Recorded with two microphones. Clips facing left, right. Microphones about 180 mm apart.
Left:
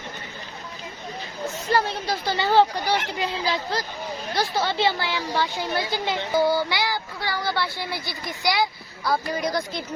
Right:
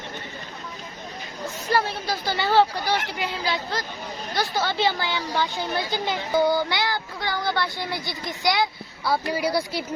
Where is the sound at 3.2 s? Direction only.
Centre (ahead or behind).